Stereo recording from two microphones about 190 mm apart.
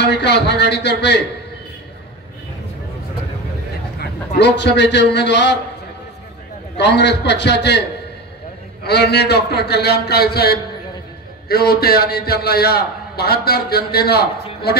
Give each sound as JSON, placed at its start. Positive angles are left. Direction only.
{"t": 0.0, "sound": "a man's voice", "side_deg": 65}
{"t": 4.4, "sound": "a man's voice", "side_deg": 65}
{"t": 6.8, "sound": "a man's voice", "side_deg": 65}
{"t": 8.8, "sound": "a man's voice", "side_deg": 60}